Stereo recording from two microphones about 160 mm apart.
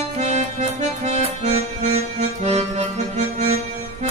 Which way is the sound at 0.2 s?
45° right (ahead or behind).